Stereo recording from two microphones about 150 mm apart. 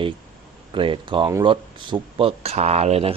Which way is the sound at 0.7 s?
35° right (ahead or behind).